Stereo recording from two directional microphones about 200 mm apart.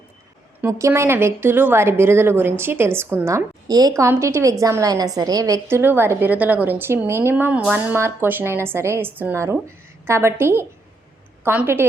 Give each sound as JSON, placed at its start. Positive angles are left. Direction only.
{"t": 0.6, "sound": "speech", "side_deg": -15}